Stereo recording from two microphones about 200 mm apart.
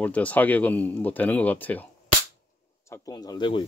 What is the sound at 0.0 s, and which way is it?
Speech, 5° left (ahead or behind).